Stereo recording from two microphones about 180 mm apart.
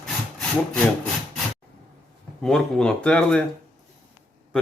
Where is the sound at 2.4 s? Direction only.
5° left (ahead or behind).